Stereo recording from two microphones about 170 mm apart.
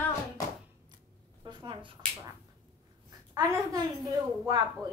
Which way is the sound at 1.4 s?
25° right (ahead or behind).